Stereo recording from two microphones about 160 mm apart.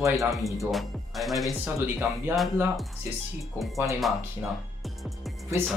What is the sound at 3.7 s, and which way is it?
Speech, 20° right (ahead or behind).